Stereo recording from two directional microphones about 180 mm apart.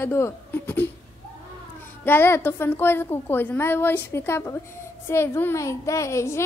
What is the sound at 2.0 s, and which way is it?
A woman's voice, 10° left (ahead or behind).